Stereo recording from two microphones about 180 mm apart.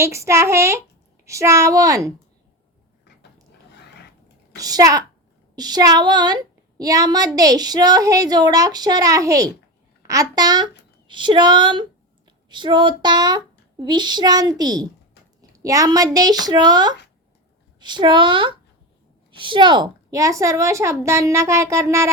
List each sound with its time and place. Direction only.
0.0 s a woman's voice: 15° right (ahead or behind)
4.5 s speech: 20° right (ahead or behind)
15.4 s a sound: 20° right (ahead or behind)
16.1 s a woman's voice: 20° right (ahead or behind)